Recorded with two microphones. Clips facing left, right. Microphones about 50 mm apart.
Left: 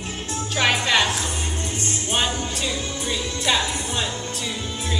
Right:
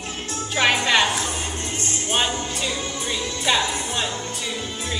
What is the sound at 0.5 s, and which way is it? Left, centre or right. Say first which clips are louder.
Speech: right 1 dB; centre.